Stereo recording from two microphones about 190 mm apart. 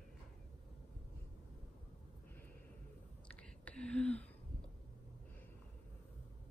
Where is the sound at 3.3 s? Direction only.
5° left (ahead or behind).